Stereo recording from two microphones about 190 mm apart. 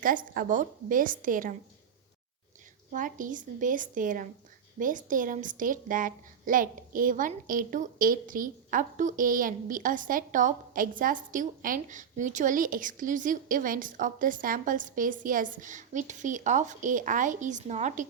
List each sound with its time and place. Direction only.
0.0 s a woman's voice: 45° right (ahead or behind)
2.9 s a woman's voice: 45° right (ahead or behind)